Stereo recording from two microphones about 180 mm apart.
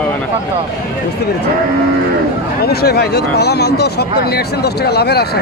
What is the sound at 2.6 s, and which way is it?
Speech, 60° left (ahead or behind).